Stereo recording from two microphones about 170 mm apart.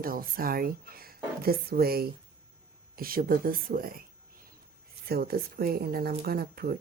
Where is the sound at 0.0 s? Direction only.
60° right (ahead or behind).